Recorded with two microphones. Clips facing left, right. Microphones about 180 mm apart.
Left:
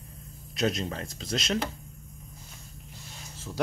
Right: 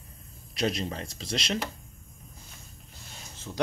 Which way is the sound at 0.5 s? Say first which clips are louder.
Left 1 dB; centre (ahead or behind).